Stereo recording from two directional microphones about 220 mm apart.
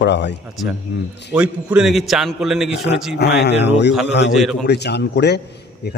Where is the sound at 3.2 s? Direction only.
50° left (ahead or behind).